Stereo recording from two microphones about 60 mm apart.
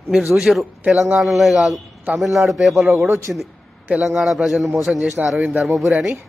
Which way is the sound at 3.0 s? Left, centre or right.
Right.